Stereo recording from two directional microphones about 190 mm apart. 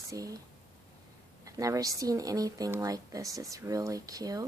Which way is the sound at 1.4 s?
15° right (ahead or behind).